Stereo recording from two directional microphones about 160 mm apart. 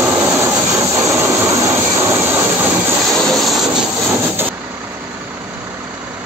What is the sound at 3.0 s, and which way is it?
Vehicle, centre (ahead or behind).